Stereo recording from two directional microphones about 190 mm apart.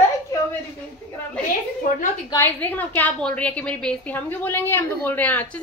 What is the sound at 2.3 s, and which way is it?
A woman's voice, 10° left (ahead or behind).